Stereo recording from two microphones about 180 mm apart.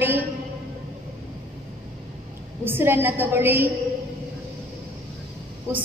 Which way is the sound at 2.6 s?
10° right (ahead or behind).